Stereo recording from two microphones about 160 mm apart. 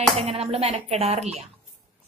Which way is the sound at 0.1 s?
35° right (ahead or behind).